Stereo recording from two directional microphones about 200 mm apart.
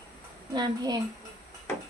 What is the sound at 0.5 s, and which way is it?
Speech, 20° right (ahead or behind).